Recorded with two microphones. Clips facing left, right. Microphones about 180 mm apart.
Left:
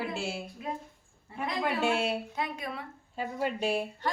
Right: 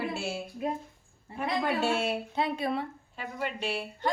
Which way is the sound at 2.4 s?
30° right (ahead or behind).